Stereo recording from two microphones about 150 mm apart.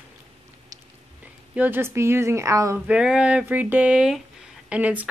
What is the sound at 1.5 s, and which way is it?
A woman's voice, 10° right (ahead or behind).